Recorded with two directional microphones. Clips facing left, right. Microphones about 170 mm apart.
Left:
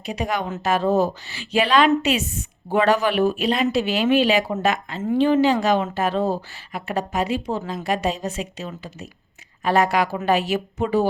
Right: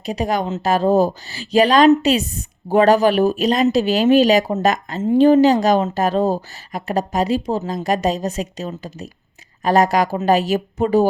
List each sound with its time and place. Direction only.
0.0 s a woman's voice: 35° right (ahead or behind)